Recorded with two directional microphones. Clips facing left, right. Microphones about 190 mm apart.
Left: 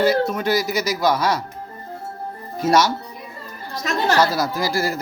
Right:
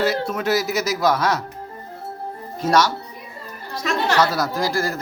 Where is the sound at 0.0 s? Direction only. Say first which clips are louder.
Left 3 dB; 5° right (ahead or behind).